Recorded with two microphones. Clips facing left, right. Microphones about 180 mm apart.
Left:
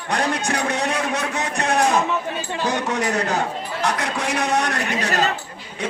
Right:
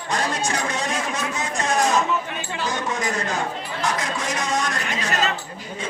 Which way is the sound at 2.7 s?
70° left (ahead or behind).